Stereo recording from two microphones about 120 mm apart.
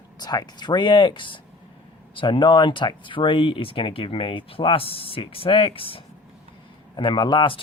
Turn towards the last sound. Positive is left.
turn(degrees=45)  # may be behind; listen again after turning